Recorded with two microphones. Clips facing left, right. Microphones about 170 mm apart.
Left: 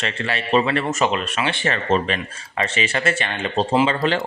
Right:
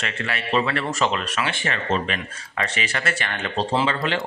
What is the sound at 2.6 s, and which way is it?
A man's voice, 25° left (ahead or behind).